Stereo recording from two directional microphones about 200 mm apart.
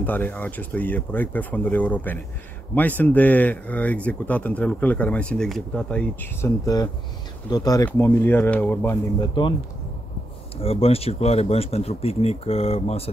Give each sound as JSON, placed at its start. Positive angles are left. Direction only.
{"t": 0.0, "sound": "speech", "side_deg": 10}
{"t": 6.6, "sound": "speech", "side_deg": 20}
{"t": 9.2, "sound": "speech", "side_deg": 25}
{"t": 10.6, "sound": "speech", "side_deg": 30}